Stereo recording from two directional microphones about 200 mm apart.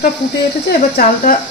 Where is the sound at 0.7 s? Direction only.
45° left (ahead or behind).